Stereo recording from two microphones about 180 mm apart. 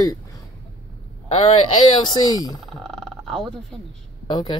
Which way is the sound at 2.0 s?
25° left (ahead or behind).